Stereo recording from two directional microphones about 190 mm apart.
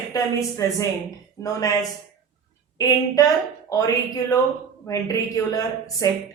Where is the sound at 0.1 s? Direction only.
15° left (ahead or behind).